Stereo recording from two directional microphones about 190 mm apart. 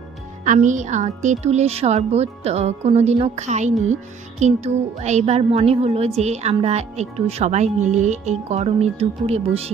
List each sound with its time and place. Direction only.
0.5 s speech: 40° right (ahead or behind)